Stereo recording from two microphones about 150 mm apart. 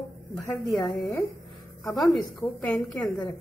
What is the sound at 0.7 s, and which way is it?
Speech, 20° left (ahead or behind).